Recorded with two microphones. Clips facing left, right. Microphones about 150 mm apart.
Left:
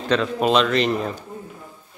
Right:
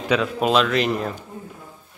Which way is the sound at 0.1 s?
5° right (ahead or behind).